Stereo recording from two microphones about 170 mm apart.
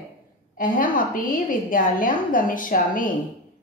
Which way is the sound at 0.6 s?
55° left (ahead or behind).